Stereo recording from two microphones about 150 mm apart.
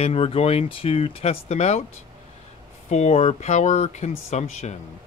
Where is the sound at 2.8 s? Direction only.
50° left (ahead or behind).